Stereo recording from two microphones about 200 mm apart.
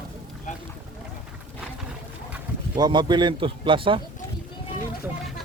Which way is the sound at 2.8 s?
20° right (ahead or behind).